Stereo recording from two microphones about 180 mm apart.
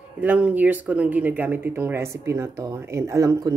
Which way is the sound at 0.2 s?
10° right (ahead or behind).